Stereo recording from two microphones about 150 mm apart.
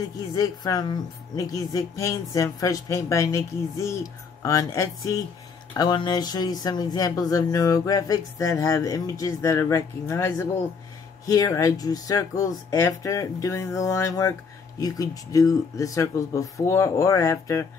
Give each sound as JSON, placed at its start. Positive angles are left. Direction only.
{"t": 0.3, "sound": "speech", "side_deg": 25}